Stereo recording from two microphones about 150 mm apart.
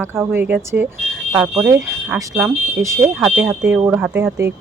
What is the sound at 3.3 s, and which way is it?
Speech, centre (ahead or behind).